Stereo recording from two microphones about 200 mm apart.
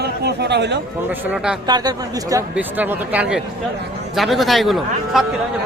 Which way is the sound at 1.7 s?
20° right (ahead or behind).